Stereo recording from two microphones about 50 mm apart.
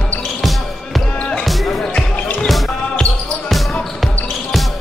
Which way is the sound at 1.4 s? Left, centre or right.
Centre.